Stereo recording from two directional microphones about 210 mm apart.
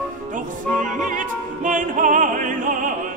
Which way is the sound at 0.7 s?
40° right (ahead or behind).